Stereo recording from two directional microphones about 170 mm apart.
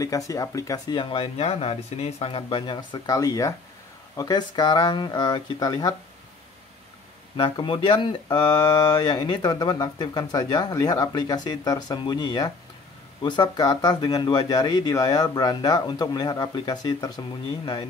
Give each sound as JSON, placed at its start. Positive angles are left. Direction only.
{"t": 0.0, "sound": "speech", "side_deg": 20}
{"t": 7.3, "sound": "speech", "side_deg": 30}